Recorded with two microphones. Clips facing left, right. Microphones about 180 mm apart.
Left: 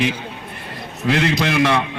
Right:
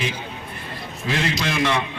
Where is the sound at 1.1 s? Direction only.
60° left (ahead or behind).